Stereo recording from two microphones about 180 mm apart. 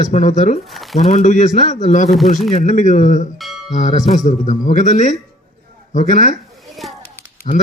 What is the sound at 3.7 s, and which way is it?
A man's voice, 45° left (ahead or behind).